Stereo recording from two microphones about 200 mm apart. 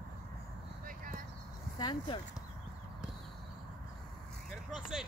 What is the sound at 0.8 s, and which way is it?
Clip-clop, 45° right (ahead or behind).